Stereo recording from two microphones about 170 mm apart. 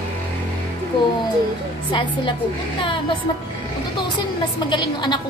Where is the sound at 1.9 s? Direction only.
30° left (ahead or behind).